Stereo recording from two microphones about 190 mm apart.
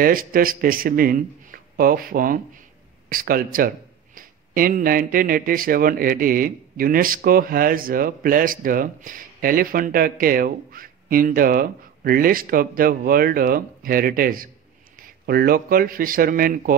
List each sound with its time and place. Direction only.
0.0 s speech: 50° right (ahead or behind)